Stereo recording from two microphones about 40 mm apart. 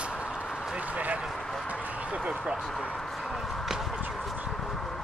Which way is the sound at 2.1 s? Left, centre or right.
Right.